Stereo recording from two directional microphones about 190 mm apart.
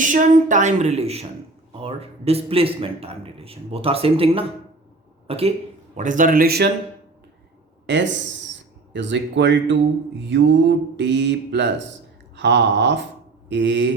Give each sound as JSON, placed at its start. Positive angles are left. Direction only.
{"t": 0.0, "sound": "a man's voice", "side_deg": -40}
{"t": 6.0, "sound": "a man's voice", "side_deg": -40}
{"t": 7.9, "sound": "speech", "side_deg": -70}
{"t": 8.9, "sound": "mantra", "side_deg": -70}